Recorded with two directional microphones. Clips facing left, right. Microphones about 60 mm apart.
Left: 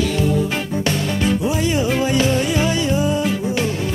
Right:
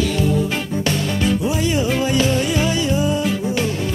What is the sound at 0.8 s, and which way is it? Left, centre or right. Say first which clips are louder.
Music: even; left.